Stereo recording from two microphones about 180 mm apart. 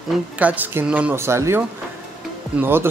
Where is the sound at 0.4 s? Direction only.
10° right (ahead or behind).